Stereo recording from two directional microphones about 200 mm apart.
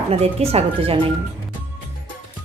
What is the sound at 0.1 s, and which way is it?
Speech, 30° right (ahead or behind).